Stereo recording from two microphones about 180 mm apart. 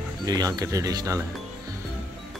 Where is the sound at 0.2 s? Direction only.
20° right (ahead or behind).